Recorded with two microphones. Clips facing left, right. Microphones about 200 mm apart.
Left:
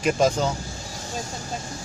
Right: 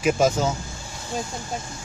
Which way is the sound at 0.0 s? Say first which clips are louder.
Right 1 dB; 5° right (ahead or behind).